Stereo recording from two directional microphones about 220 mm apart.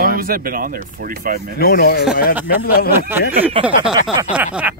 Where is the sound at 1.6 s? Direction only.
45° left (ahead or behind).